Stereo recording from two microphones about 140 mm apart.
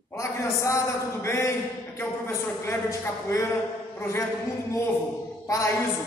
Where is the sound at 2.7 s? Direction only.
20° left (ahead or behind).